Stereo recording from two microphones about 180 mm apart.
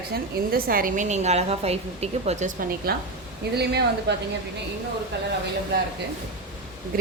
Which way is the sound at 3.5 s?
65° right (ahead or behind).